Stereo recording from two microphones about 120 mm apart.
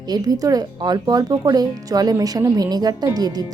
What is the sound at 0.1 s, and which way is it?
A woman's voice, 30° right (ahead or behind).